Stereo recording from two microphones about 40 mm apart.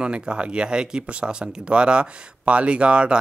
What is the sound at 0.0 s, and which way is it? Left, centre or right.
Speech, right.